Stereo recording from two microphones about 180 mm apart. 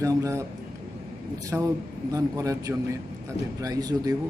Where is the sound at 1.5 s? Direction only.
10° right (ahead or behind).